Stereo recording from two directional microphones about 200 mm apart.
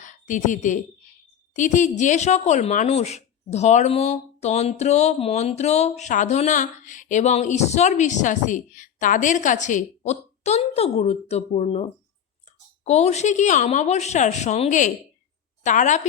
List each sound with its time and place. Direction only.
0.0 s a woman's voice: 40° left (ahead or behind)